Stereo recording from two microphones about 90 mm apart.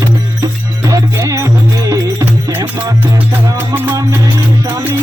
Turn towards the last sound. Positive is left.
turn(degrees=-25)  # may be behind; listen again after turning